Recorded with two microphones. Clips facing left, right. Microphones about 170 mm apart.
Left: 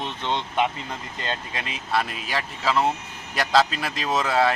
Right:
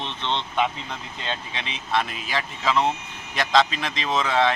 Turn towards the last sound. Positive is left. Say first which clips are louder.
# even
turn(degrees=5)  # may be behind; listen again after turning